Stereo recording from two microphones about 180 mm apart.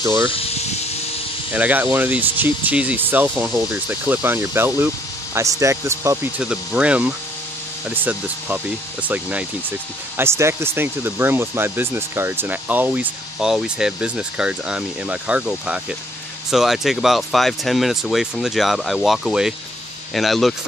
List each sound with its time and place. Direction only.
0.0 s speech: 15° right (ahead or behind)
0.3 s speech: 35° left (ahead or behind)
1.5 s speech: 10° right (ahead or behind)